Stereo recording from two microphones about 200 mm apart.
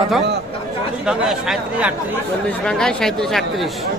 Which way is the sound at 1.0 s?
5° right (ahead or behind).